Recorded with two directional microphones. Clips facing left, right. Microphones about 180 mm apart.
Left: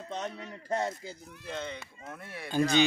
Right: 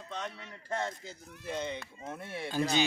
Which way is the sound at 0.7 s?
15° left (ahead or behind).